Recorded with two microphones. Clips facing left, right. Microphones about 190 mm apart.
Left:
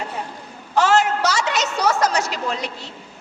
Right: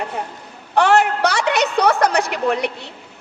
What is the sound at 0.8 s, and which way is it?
A woman's voice, 60° right (ahead or behind).